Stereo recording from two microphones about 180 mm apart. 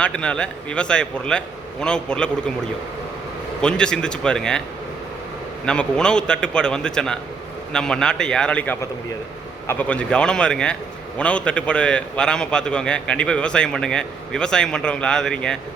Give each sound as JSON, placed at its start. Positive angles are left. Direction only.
{"t": 0.0, "sound": "a man's voice", "side_deg": 5}
{"t": 3.6, "sound": "a man's voice", "side_deg": 5}
{"t": 5.6, "sound": "a man's voice", "side_deg": 5}